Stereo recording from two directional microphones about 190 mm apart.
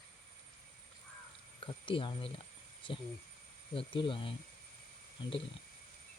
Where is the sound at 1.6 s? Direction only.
25° left (ahead or behind).